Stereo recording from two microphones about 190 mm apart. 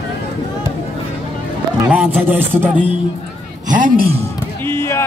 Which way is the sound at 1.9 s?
10° right (ahead or behind).